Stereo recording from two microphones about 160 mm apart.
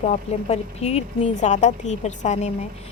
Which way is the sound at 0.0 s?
40° left (ahead or behind).